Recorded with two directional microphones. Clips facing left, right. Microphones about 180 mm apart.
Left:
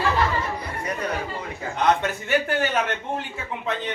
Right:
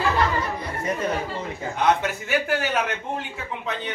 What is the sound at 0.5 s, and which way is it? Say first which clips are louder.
Speech: right 2 dB; 25° right (ahead or behind).